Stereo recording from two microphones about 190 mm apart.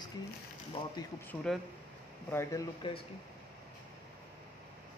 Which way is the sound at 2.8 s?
25° left (ahead or behind).